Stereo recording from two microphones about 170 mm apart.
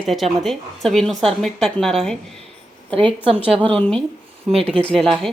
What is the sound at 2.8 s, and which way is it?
Speech, 30° right (ahead or behind).